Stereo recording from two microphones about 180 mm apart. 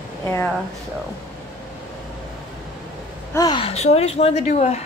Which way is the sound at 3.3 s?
20° left (ahead or behind).